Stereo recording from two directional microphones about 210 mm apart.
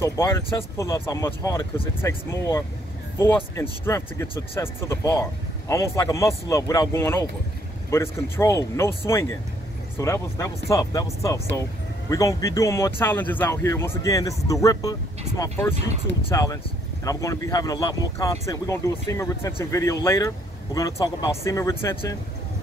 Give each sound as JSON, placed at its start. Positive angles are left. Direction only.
{"t": 0.0, "sound": "speech", "side_deg": 10}